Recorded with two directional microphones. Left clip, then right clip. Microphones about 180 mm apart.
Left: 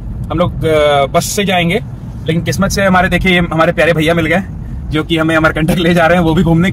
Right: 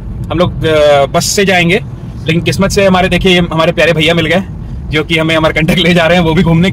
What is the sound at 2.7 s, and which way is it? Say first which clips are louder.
Speech: right 2 dB; 20° right (ahead or behind).